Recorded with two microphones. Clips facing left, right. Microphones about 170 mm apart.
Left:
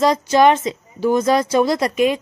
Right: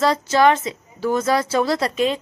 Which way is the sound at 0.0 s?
15° left (ahead or behind).